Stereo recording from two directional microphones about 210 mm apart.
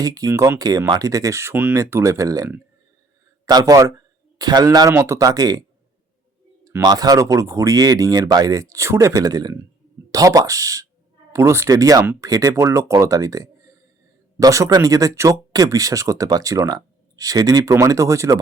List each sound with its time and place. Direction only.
0.0 s speech: 15° right (ahead or behind)
6.7 s speech: 15° right (ahead or behind)